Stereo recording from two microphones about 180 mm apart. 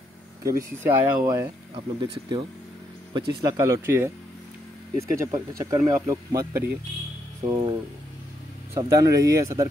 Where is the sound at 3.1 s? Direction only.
20° right (ahead or behind).